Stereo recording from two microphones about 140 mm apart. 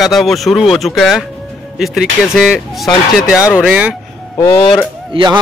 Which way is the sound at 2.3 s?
Centre (ahead or behind).